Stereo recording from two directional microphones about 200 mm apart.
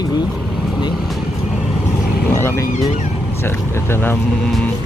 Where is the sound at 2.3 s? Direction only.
15° left (ahead or behind).